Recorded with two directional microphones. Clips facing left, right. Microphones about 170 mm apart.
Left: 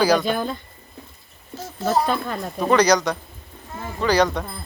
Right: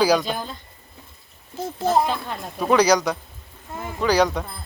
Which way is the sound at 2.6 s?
5° right (ahead or behind).